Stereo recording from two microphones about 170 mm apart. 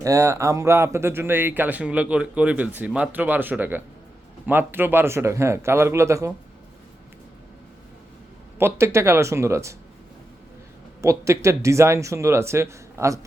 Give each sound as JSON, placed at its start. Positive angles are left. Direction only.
{"t": 0.0, "sound": "speech", "side_deg": -20}
{"t": 8.5, "sound": "speech", "side_deg": -15}
{"t": 11.0, "sound": "speech", "side_deg": -15}